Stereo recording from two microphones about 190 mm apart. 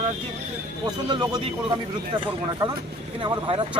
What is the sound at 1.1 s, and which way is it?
Speech, 20° right (ahead or behind).